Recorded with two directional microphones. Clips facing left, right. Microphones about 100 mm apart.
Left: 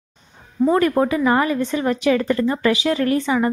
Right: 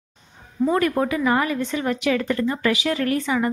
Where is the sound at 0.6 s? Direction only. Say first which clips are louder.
Left 4 dB; 35° left (ahead or behind).